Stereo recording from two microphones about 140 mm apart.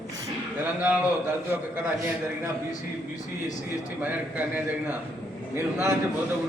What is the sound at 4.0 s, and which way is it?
A man's voice, 10° right (ahead or behind).